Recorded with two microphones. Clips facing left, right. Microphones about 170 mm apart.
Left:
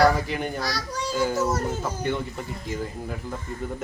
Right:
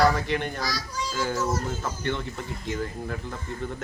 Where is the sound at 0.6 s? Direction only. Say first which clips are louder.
Left 2 dB; 65° left (ahead or behind).